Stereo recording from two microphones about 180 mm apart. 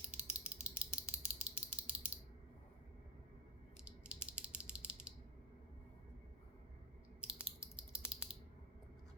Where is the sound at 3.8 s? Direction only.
5° right (ahead or behind).